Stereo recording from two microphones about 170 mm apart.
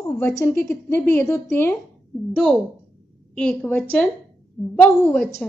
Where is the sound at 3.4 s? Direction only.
5° left (ahead or behind).